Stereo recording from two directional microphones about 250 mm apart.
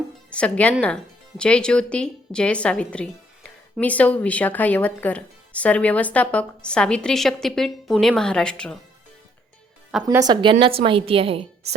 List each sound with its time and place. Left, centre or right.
0.3 s a woman's voice: centre
9.9 s speech: centre